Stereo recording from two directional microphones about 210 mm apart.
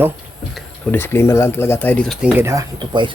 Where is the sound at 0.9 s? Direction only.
10° left (ahead or behind).